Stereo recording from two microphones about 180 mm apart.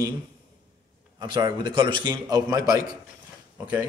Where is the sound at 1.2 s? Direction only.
25° right (ahead or behind).